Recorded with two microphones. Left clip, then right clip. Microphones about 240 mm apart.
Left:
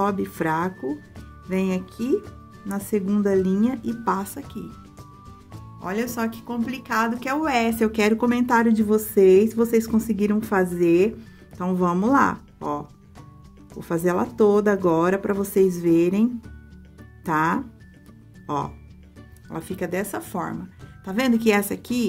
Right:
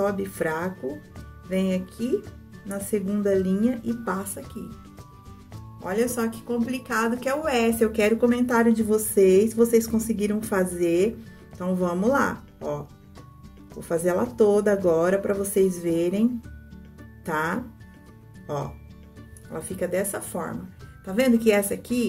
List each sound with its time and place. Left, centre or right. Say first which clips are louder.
0.0 s a woman's voice: left 1 dB; left
2.0 s speech: left 3 dB; centre
2.9 s a woman's voice: left 2 dB; left
5.9 s a woman's voice: right 2 dB; left
19.5 s a woman's voice: right 1 dB; left